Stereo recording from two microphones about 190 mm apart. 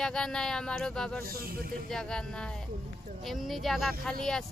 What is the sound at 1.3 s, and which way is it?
Speech, 55° right (ahead or behind).